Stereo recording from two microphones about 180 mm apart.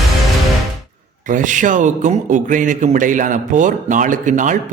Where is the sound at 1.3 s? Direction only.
45° right (ahead or behind).